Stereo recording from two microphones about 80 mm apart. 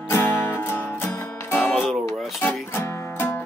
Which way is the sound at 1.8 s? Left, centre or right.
Centre.